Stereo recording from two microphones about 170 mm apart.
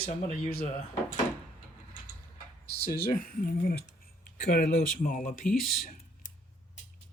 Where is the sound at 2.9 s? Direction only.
60° left (ahead or behind).